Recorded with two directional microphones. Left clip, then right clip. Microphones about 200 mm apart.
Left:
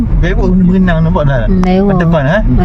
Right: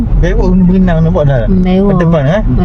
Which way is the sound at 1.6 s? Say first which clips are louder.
Left 1 dB; 5° left (ahead or behind).